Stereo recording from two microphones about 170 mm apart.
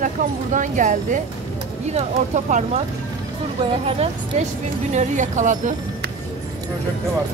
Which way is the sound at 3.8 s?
35° right (ahead or behind).